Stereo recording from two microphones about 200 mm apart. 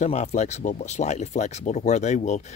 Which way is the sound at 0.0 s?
35° left (ahead or behind).